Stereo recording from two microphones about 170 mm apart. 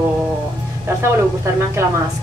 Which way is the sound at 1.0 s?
15° right (ahead or behind).